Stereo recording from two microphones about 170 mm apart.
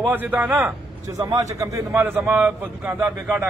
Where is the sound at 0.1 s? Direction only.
10° right (ahead or behind).